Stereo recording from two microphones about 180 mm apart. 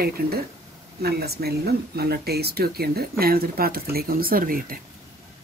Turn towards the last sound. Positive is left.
turn(degrees=-50)  # may be behind; listen again after turning